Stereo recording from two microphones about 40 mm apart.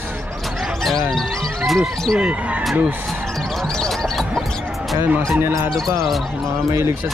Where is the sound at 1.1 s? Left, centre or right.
Centre.